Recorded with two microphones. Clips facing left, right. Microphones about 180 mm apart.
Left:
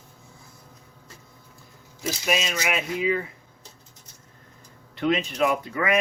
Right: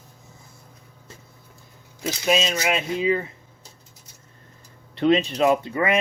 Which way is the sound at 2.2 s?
25° right (ahead or behind).